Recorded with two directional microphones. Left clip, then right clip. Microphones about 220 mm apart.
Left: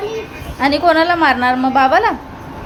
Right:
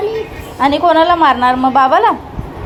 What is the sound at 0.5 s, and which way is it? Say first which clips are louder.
A woman's voice: right 2 dB; centre (ahead or behind).